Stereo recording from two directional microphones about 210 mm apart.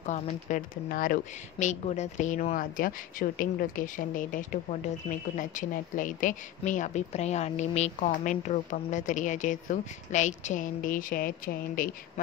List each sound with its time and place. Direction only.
0.0 s speech: 35° left (ahead or behind)